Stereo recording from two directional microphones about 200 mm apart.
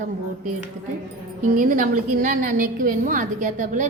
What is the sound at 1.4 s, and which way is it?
A woman's voice, 40° right (ahead or behind).